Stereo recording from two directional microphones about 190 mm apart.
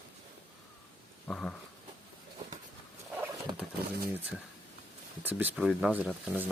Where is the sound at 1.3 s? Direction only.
5° left (ahead or behind).